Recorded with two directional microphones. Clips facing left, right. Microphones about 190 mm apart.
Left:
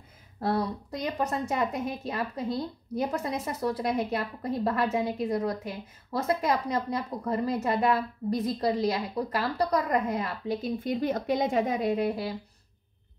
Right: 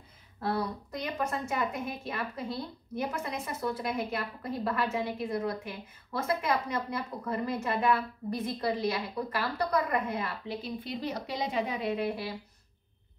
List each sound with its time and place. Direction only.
0.4 s a woman's voice: 35° left (ahead or behind)